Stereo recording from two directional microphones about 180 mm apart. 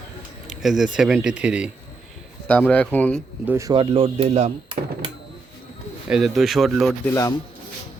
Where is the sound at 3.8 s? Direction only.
30° right (ahead or behind).